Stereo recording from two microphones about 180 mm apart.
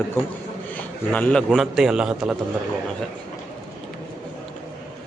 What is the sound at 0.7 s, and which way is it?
A man's voice, 10° left (ahead or behind).